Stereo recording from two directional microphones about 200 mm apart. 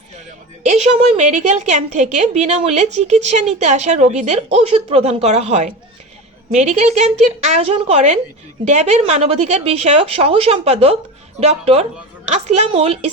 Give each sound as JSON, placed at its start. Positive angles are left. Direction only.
{"t": 0.7, "sound": "a woman's voice", "side_deg": -30}